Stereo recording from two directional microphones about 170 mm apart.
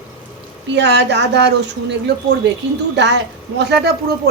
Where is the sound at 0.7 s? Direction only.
90° right.